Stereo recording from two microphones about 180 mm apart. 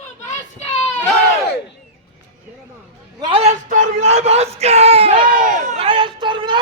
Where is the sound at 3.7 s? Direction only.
40° right (ahead or behind).